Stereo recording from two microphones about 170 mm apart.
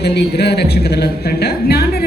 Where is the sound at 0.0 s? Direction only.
75° left (ahead or behind).